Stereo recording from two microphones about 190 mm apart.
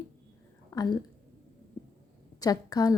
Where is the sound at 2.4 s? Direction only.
20° left (ahead or behind).